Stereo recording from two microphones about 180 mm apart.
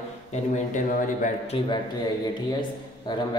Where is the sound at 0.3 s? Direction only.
45° left (ahead or behind).